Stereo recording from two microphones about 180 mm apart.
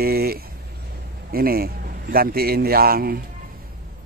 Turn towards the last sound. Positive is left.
turn(degrees=-55)  # may be behind; listen again after turning